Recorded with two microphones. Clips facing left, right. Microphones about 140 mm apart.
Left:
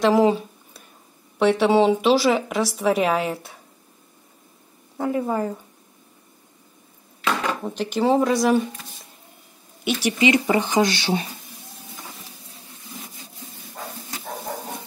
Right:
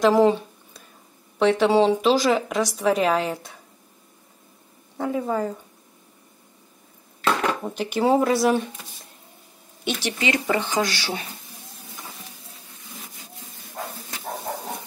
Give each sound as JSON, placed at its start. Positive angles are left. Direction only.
{"t": 0.0, "sound": "a sound", "side_deg": 0}
{"t": 1.4, "sound": "a woman's voice", "side_deg": 0}
{"t": 4.9, "sound": "a woman's voice", "side_deg": 5}
{"t": 7.6, "sound": "a woman's voice", "side_deg": -5}
{"t": 9.8, "sound": "speech", "side_deg": 10}